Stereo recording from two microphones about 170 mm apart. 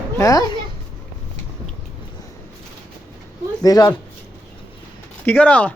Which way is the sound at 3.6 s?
20° left (ahead or behind).